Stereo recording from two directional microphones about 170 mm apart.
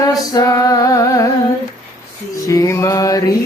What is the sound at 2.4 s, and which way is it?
Music, 20° left (ahead or behind).